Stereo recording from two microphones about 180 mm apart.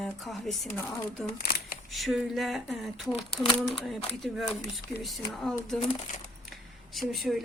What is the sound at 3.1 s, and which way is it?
Speech, 30° left (ahead or behind).